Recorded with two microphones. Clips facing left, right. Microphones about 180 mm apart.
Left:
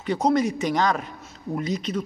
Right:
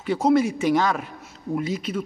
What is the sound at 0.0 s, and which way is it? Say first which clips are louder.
A man's voice: right 2 dB; 5° right (ahead or behind).